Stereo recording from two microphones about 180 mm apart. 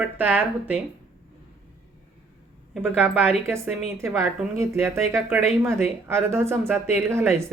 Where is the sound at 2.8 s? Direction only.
Centre (ahead or behind).